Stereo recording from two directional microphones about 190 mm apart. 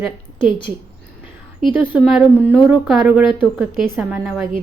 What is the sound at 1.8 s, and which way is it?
A woman's voice, 5° right (ahead or behind).